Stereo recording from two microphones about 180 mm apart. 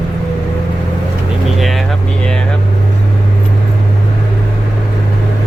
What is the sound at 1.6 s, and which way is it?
Vehicle, centre (ahead or behind).